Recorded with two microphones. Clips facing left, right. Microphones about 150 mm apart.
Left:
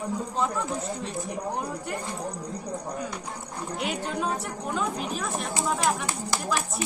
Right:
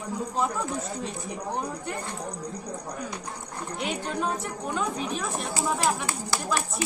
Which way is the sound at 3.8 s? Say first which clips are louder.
Even; centre (ahead or behind).